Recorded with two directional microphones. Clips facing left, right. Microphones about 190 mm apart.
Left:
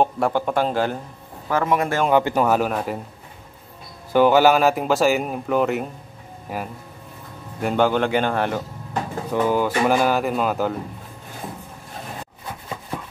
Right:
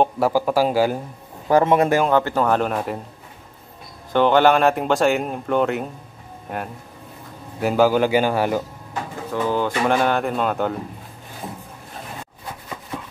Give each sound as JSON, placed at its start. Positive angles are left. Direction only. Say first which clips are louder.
{"t": 0.0, "sound": "a man's voice", "louder": "right 2 dB", "side_deg": -5}
{"t": 1.5, "sound": "a man's voice", "louder": "right 5 dB", "side_deg": -25}
{"t": 2.0, "sound": "speech", "louder": "left 1 dB", "side_deg": 15}
{"t": 4.1, "sound": "a man's voice", "louder": "left 1 dB", "side_deg": 5}
{"t": 9.3, "sound": "speech", "louder": "left 2 dB", "side_deg": 10}